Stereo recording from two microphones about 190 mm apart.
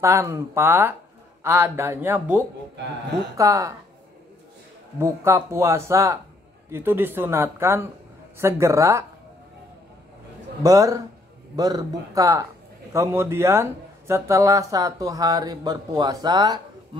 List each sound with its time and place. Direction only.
0.0 s speech: 15° right (ahead or behind)
4.9 s speech: 15° right (ahead or behind)
10.6 s speech: 15° right (ahead or behind)